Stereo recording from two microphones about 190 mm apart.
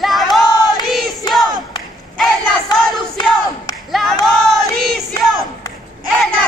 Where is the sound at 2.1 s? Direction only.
Centre (ahead or behind).